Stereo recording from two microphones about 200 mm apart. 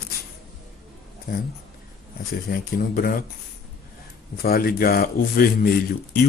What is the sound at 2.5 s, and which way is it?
Speech, 50° left (ahead or behind).